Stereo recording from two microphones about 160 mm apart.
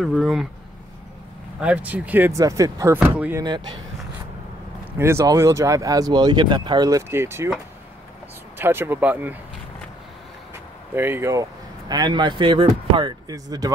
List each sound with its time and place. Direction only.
0.0 s speech: centre (ahead or behind)
1.6 s speech: 10° right (ahead or behind)
3.4 s speech: 25° right (ahead or behind)
4.9 s speech: 15° right (ahead or behind)
8.5 s speech: 15° right (ahead or behind)
11.0 s speech: 15° right (ahead or behind)
11.9 s speech: 25° right (ahead or behind)